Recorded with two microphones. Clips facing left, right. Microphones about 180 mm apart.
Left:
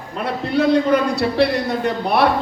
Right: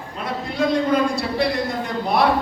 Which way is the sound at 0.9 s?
65° left (ahead or behind).